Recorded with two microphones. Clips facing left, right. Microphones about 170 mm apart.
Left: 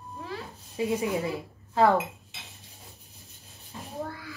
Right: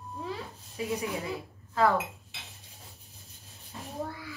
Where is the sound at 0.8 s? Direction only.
25° left (ahead or behind).